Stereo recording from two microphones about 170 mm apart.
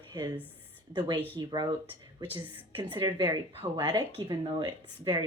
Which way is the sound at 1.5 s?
25° right (ahead or behind).